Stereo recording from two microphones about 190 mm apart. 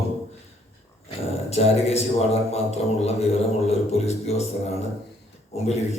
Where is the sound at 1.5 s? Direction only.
35° left (ahead or behind).